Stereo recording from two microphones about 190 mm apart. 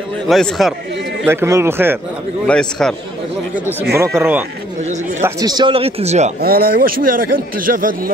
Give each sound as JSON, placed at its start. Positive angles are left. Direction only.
{"t": 0.3, "sound": "a man's voice", "side_deg": 0}
{"t": 1.2, "sound": "speech", "side_deg": -15}
{"t": 2.4, "sound": "a man's voice", "side_deg": 5}
{"t": 3.9, "sound": "speech", "side_deg": -15}
{"t": 6.4, "sound": "a man's voice", "side_deg": -50}